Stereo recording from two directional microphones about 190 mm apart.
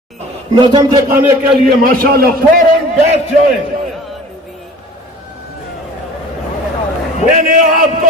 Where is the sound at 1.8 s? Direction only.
50° right (ahead or behind).